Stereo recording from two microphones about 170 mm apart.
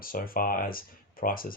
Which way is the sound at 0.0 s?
55° left (ahead or behind).